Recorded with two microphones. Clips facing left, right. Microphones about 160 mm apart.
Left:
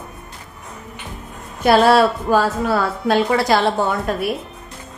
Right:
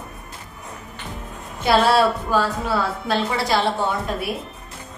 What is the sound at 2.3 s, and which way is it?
A woman's voice, 60° left (ahead or behind).